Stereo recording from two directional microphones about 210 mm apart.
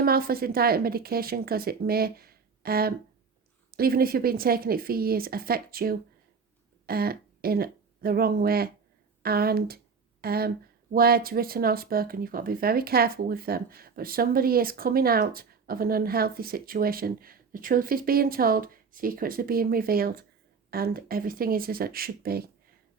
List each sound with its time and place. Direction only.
0.0 s speech: 45° right (ahead or behind)